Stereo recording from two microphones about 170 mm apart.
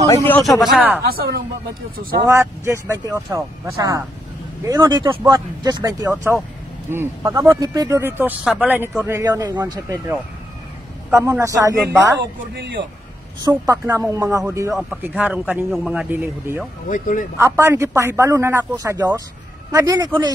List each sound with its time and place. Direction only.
0.1 s speech: 10° left (ahead or behind)
1.0 s speech: 65° right (ahead or behind)
2.2 s speech: 15° right (ahead or behind)
12.5 s speech: 90° right
13.4 s speech: 20° right (ahead or behind)
14.7 s speech: centre (ahead or behind)
16.9 s speech: 50° left (ahead or behind)
17.4 s speech: 15° right (ahead or behind)